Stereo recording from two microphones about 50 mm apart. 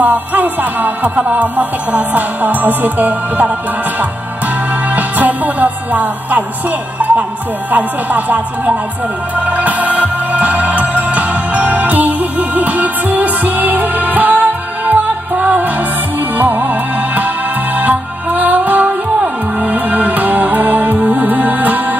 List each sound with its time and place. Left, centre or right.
0.0 s music: right
4.9 s music: right
7.7 s music: right